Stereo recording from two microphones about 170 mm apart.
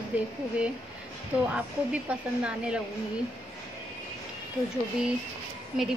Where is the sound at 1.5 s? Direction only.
5° right (ahead or behind).